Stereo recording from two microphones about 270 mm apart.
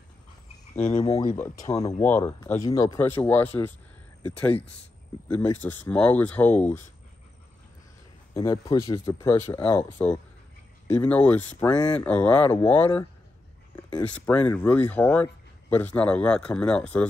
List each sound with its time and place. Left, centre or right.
0.7 s speech: centre
1.0 s speech: left
1.9 s speech: centre
8.4 s speech: centre